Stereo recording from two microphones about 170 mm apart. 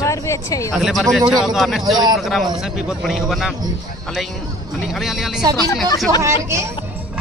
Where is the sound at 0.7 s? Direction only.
Centre (ahead or behind).